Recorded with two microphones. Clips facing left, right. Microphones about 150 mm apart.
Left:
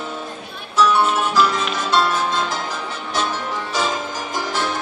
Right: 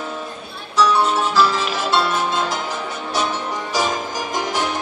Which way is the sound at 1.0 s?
Centre (ahead or behind).